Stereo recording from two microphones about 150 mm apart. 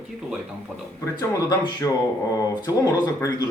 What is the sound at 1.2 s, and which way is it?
Speech, 25° left (ahead or behind).